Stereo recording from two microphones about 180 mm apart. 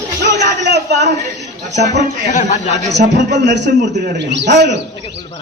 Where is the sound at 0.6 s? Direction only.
70° right (ahead or behind).